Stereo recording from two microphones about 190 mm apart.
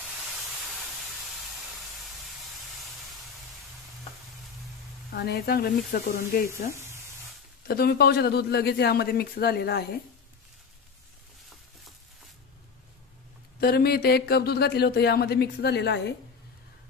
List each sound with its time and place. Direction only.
1.8 s a sound: centre (ahead or behind)
5.1 s speech: 60° left (ahead or behind)
7.6 s speech: 55° left (ahead or behind)
13.6 s speech: 55° left (ahead or behind)